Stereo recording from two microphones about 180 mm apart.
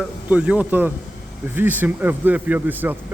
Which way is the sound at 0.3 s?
5° right (ahead or behind).